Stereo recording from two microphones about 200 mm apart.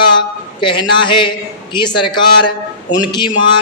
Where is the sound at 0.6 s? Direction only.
25° left (ahead or behind).